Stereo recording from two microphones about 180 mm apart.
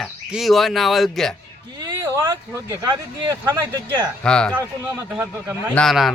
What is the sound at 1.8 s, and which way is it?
Speech, 15° right (ahead or behind).